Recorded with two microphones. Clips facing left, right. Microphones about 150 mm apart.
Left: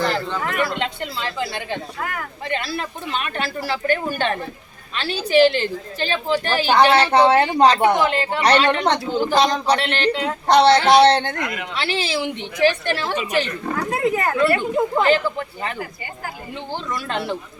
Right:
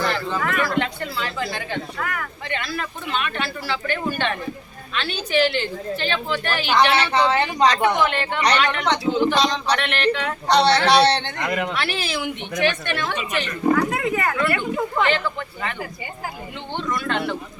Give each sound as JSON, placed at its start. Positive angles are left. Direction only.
{"t": 0.4, "sound": "a woman's voice", "side_deg": 25}
{"t": 9.6, "sound": "a sound", "side_deg": 30}
{"t": 10.4, "sound": "speech", "side_deg": 50}
{"t": 11.4, "sound": "speech", "side_deg": -45}
{"t": 11.7, "sound": "a woman's voice", "side_deg": 25}
{"t": 16.7, "sound": "a woman's voice", "side_deg": 30}